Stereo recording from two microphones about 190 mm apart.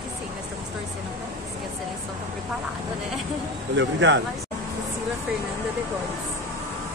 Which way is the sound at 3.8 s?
75° right (ahead or behind).